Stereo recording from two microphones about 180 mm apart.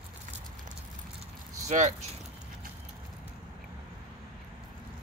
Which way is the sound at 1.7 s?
40° right (ahead or behind).